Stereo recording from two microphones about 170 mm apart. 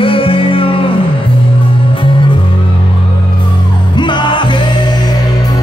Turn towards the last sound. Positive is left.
turn(degrees=25)  # may be behind; listen again after turning